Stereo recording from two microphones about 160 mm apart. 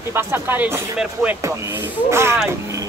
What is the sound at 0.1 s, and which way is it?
Speech, 15° right (ahead or behind).